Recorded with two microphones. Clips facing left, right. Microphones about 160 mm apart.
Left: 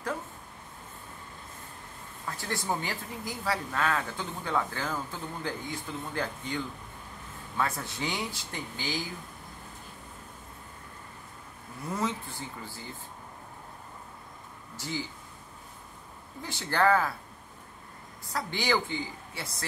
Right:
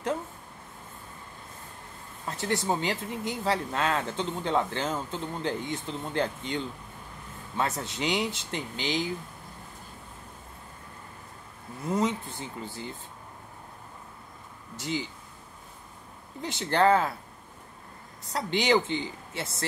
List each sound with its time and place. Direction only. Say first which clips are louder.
2.2 s speech: right 4 dB; 25° right (ahead or behind)
7.8 s speech: right 5 dB; 20° right (ahead or behind)
12.0 s speech: right 3 dB; 20° right (ahead or behind)
14.8 s speech: right 3 dB; 20° right (ahead or behind)
16.4 s speech: right 3 dB; 20° right (ahead or behind)
18.3 s speech: right 5 dB; 20° right (ahead or behind)